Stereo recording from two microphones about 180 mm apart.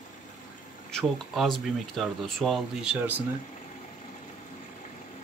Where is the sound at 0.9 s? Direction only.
Centre (ahead or behind).